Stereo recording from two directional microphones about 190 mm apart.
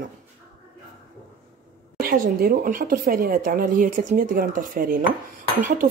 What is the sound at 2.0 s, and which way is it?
Speech, 50° right (ahead or behind).